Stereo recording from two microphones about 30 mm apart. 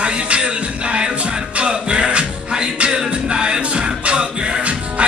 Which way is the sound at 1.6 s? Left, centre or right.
Right.